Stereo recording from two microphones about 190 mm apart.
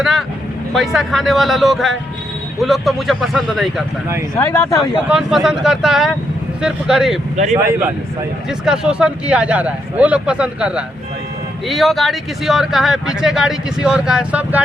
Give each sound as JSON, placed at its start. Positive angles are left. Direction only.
{"t": 0.0, "sound": "speech", "side_deg": 0}
{"t": 4.4, "sound": "speech", "side_deg": 15}
{"t": 4.8, "sound": "speech", "side_deg": -5}
{"t": 8.4, "sound": "speech", "side_deg": -5}